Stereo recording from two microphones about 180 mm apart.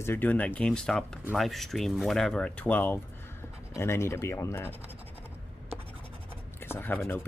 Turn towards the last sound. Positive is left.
turn(degrees=10)  # may be behind; listen again after turning